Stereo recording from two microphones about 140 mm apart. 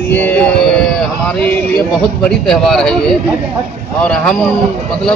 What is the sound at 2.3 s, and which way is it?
Speech, 5° left (ahead or behind).